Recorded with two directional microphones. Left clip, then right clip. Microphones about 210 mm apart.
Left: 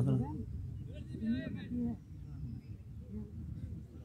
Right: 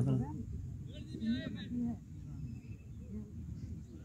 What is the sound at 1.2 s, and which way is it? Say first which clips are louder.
Speech: even; 20° left (ahead or behind).